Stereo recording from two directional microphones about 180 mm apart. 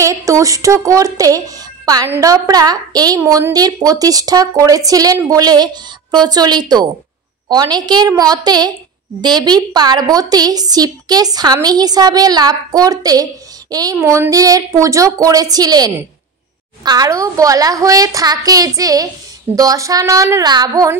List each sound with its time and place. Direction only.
0.0 s speech: 20° right (ahead or behind)